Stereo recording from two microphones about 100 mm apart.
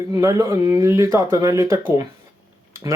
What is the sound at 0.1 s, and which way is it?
Speech, 30° right (ahead or behind).